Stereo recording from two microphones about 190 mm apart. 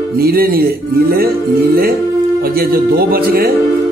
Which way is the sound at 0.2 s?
50° right (ahead or behind).